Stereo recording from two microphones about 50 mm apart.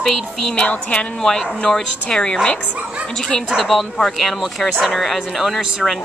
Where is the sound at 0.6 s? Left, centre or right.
Left.